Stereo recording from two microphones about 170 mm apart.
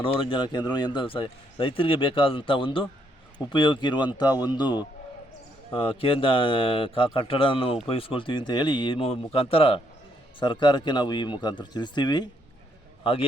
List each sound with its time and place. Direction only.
0.0 s a man's voice: 30° left (ahead or behind)